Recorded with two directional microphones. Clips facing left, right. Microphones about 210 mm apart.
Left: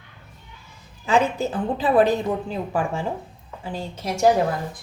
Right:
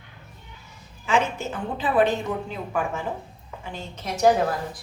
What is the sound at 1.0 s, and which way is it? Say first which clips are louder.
A woman's voice: left 4 dB; 35° left (ahead or behind).